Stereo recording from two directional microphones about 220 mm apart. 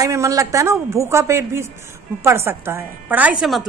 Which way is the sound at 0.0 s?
15° right (ahead or behind).